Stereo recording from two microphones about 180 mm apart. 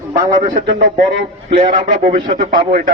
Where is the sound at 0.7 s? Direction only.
70° right (ahead or behind).